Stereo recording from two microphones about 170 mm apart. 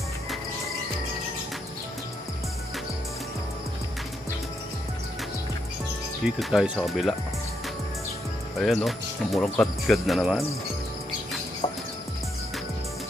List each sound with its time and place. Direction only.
6.2 s speech: 5° right (ahead or behind)
8.5 s speech: centre (ahead or behind)
11.6 s music: 30° left (ahead or behind)